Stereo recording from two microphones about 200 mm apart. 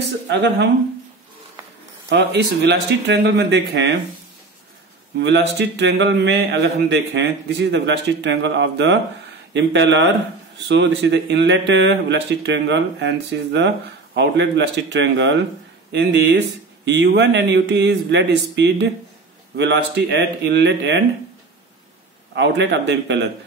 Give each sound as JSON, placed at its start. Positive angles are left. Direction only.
{"t": 2.0, "sound": "speech", "side_deg": -60}
{"t": 5.2, "sound": "speech", "side_deg": -60}
{"t": 22.3, "sound": "speech", "side_deg": -60}